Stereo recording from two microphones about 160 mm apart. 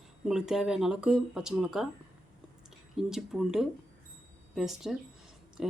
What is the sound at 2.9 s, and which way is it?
Speech, centre (ahead or behind).